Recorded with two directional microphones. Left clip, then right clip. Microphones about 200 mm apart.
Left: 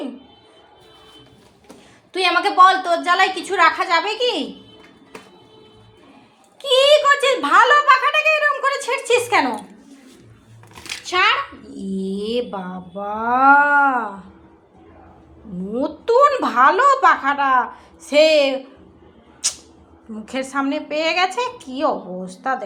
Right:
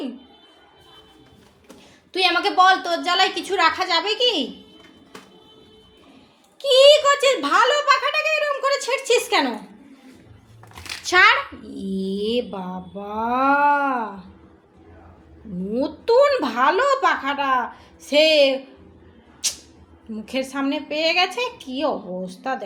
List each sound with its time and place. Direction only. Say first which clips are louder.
2.1 s a woman's voice: left 3 dB; 10° right (ahead or behind)
6.6 s a sound: right 1 dB; 10° right (ahead or behind)
11.0 s speech: right 2 dB; 25° right (ahead or behind)
11.9 s a woman's voice: even; 10° right (ahead or behind)
15.7 s a woman's voice: left 1 dB; 10° right (ahead or behind)
19.4 s a sound: left 1 dB; 5° right (ahead or behind)
20.2 s a woman's voice: left 2 dB; 10° right (ahead or behind)